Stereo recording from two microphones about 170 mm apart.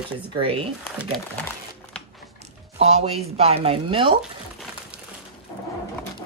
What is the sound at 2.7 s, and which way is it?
Speech, 40° right (ahead or behind).